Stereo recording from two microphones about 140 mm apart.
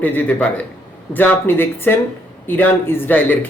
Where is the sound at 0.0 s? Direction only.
10° left (ahead or behind).